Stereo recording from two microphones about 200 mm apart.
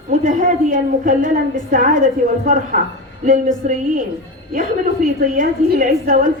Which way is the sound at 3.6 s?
40° right (ahead or behind).